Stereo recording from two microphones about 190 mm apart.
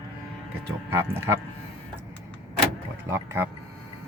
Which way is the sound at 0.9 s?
10° right (ahead or behind).